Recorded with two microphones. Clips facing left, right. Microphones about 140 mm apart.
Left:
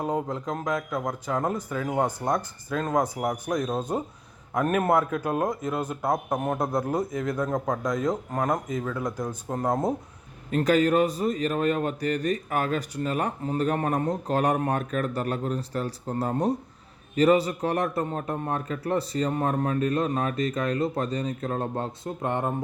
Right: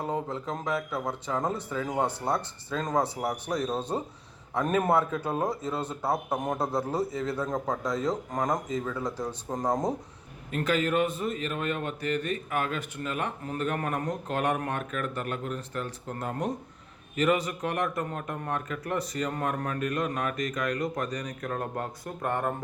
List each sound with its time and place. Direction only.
0.0 s speech: 15° left (ahead or behind)
0.8 s a man's voice: 5° right (ahead or behind)
1.4 s speech: 10° left (ahead or behind)
6.1 s a man's voice: 10° right (ahead or behind)
6.4 s speech: 10° left (ahead or behind)
10.5 s a man's voice: 40° left (ahead or behind); by 22.5 s 20° left (ahead or behind)